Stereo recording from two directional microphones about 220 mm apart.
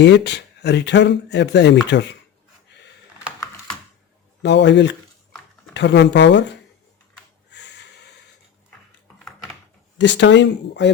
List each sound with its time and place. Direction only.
0.0 s speech: 50° left (ahead or behind)
4.4 s speech: 55° left (ahead or behind)
7.5 s a sound: 50° left (ahead or behind)
10.0 s speech: 55° left (ahead or behind)